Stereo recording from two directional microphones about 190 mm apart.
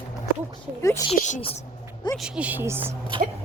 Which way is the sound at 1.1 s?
40° left (ahead or behind).